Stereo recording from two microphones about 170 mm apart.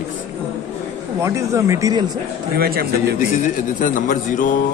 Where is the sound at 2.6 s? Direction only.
60° right (ahead or behind).